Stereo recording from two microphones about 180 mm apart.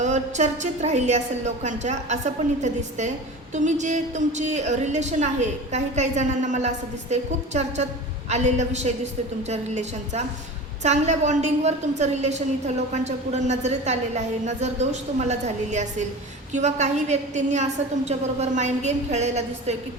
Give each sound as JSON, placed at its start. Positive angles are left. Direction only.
{"t": 0.0, "sound": "a woman's voice", "side_deg": -40}